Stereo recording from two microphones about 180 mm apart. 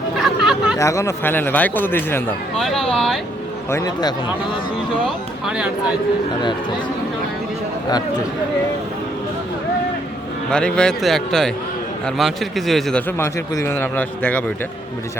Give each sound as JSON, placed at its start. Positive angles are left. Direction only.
{"t": 0.2, "sound": "chatter", "side_deg": 0}
{"t": 0.8, "sound": "a man's voice", "side_deg": 15}
{"t": 2.6, "sound": "a man's voice", "side_deg": 0}
{"t": 3.7, "sound": "a man's voice", "side_deg": 20}
{"t": 5.0, "sound": "a man's voice", "side_deg": -5}
{"t": 10.5, "sound": "a man's voice", "side_deg": 5}